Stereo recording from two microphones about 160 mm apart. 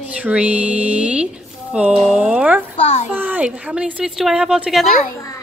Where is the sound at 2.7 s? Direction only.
40° left (ahead or behind).